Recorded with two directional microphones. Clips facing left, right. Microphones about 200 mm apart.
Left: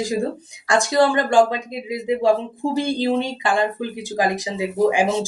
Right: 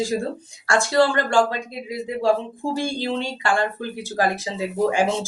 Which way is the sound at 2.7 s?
20° left (ahead or behind).